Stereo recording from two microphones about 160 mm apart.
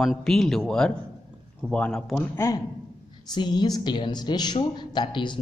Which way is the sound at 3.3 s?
25° left (ahead or behind).